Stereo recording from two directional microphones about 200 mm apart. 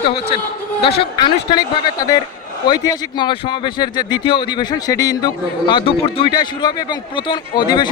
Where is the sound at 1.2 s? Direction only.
20° left (ahead or behind).